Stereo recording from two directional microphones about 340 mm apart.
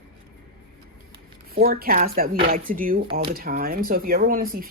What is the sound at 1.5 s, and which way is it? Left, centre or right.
Speech, right.